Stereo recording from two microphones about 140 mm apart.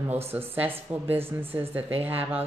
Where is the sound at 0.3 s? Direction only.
15° right (ahead or behind).